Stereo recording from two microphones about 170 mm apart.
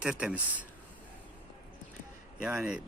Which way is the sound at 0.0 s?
5° right (ahead or behind).